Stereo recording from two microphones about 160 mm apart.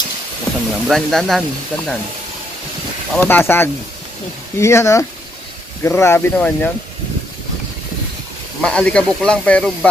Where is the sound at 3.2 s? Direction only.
10° left (ahead or behind).